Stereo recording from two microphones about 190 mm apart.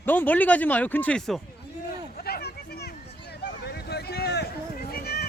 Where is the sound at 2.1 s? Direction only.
55° left (ahead or behind).